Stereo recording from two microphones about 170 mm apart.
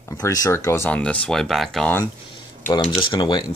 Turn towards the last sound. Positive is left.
turn(degrees=25)  # may be behind; listen again after turning